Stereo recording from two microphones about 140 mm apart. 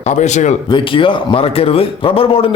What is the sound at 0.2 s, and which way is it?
Speech, 60° left (ahead or behind).